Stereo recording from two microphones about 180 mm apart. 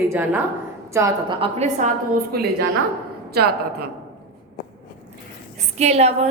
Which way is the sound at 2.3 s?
60° right (ahead or behind).